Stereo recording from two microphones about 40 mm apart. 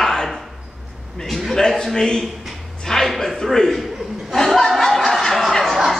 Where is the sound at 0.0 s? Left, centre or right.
Centre.